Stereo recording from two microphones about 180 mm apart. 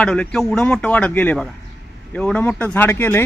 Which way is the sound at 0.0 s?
5° left (ahead or behind).